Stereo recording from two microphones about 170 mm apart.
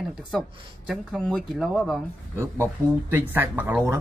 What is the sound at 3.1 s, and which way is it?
Speech, 10° right (ahead or behind).